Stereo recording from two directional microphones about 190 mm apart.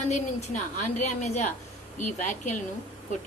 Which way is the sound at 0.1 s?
40° left (ahead or behind).